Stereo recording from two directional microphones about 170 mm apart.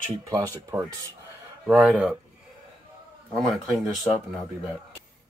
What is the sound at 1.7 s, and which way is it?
Speech, 10° right (ahead or behind).